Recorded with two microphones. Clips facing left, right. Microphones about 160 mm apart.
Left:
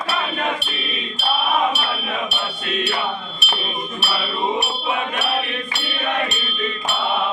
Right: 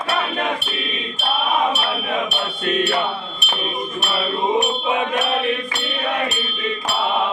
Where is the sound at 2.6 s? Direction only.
50° right (ahead or behind).